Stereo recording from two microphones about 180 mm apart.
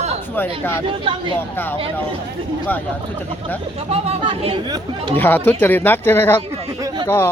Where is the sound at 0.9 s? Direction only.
30° right (ahead or behind).